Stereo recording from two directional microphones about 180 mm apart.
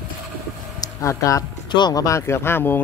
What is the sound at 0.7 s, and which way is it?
Speech, 20° left (ahead or behind).